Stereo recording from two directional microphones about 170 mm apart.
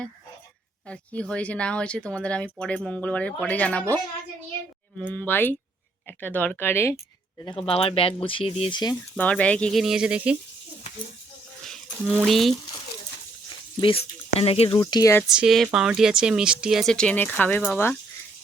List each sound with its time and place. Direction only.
0.9 s speech: 5° left (ahead or behind)
7.5 s speech: 35° left (ahead or behind)
9.1 s speech: 10° left (ahead or behind)
11.6 s a sound: 5° left (ahead or behind)
13.8 s speech: 35° left (ahead or behind)
15.3 s speech: centre (ahead or behind)